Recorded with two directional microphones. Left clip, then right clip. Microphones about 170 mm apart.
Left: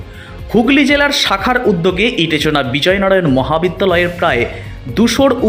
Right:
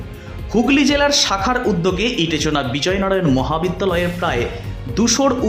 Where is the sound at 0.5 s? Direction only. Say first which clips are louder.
Left 5 dB; 15° left (ahead or behind).